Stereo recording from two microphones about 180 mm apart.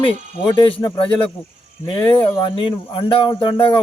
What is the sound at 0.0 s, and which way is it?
Speech, 25° left (ahead or behind).